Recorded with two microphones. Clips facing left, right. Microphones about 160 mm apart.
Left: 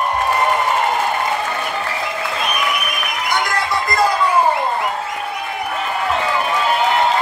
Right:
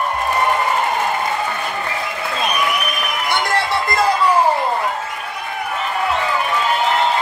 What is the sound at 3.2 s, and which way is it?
Music, 30° right (ahead or behind).